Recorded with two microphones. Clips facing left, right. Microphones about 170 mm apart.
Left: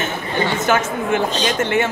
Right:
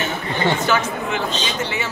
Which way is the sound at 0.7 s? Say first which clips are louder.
Left 3 dB; 50° left (ahead or behind).